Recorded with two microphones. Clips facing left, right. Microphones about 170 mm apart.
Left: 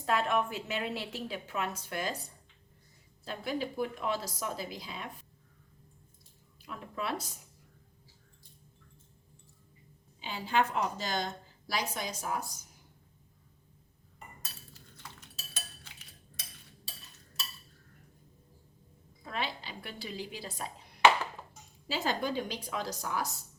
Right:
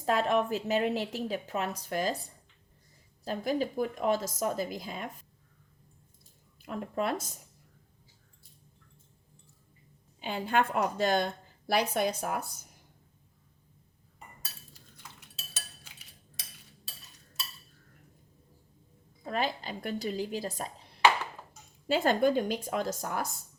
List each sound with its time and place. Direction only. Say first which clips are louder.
0.0 s a woman's voice: right 3 dB; 40° right (ahead or behind)
3.2 s speech: right 5 dB; 40° right (ahead or behind)
6.6 s speech: right 7 dB; 50° right (ahead or behind)
10.2 s a woman's voice: right 2 dB; 55° right (ahead or behind)
19.2 s speech: right 6 dB; 45° right (ahead or behind)
21.8 s speech: right 8 dB; 55° right (ahead or behind)